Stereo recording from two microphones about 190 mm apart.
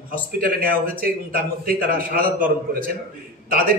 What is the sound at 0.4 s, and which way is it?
Speech, 50° right (ahead or behind).